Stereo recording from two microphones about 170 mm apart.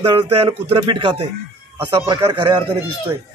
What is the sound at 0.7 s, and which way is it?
Speech, 35° right (ahead or behind).